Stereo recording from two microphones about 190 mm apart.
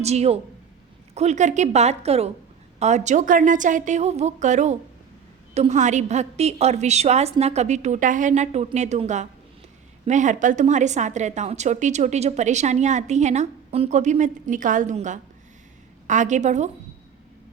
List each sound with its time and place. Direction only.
0.0 s a woman's voice: 35° right (ahead or behind)